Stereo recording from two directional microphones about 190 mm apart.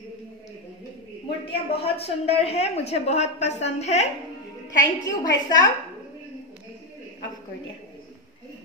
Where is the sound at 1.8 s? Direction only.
30° left (ahead or behind).